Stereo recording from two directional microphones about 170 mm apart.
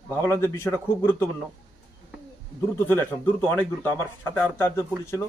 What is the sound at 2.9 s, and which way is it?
A man's voice, 10° left (ahead or behind).